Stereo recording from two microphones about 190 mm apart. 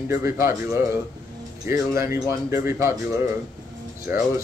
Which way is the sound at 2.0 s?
15° right (ahead or behind).